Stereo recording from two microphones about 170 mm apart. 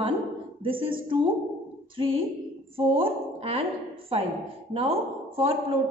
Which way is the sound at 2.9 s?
35° right (ahead or behind).